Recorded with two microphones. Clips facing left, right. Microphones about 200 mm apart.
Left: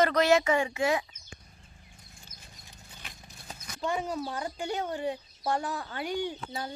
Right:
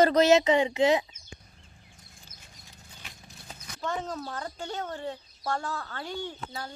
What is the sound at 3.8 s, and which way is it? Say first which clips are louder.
Speech: left 2 dB; 10° left (ahead or behind).